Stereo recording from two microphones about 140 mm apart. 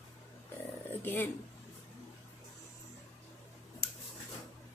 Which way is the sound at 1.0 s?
15° left (ahead or behind).